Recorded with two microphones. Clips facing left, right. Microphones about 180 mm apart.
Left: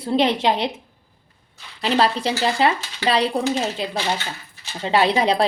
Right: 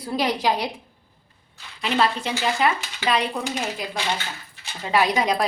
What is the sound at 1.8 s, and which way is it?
A woman's voice, 35° left (ahead or behind).